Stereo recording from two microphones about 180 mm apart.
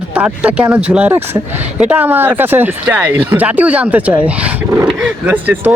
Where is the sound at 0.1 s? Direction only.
5° right (ahead or behind).